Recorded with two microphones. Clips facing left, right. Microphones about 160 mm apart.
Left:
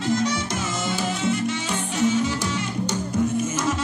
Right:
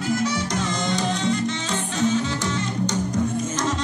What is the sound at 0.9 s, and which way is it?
Music, 5° left (ahead or behind).